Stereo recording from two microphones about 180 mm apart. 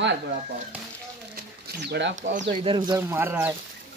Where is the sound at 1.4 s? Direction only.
65° right (ahead or behind).